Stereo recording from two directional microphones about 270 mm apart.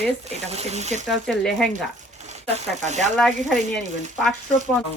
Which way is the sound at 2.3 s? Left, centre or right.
Right.